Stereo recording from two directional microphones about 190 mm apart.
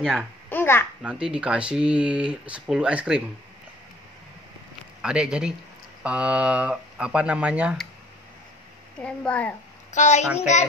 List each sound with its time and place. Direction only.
0.0 s speech: centre (ahead or behind)
0.5 s babbling: 10° left (ahead or behind)
1.0 s speech: 5° right (ahead or behind)
5.0 s speech: 5° right (ahead or behind)
9.0 s speech: 5° left (ahead or behind)
9.9 s a child's voice: 40° left (ahead or behind)